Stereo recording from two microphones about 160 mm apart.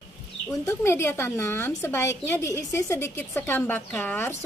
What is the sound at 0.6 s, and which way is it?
A woman's voice, 15° left (ahead or behind).